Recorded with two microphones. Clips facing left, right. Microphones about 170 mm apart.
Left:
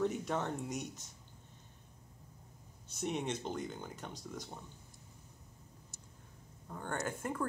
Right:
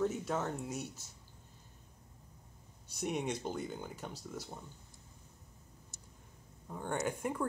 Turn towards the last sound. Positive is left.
turn(degrees=-10)  # may be behind; listen again after turning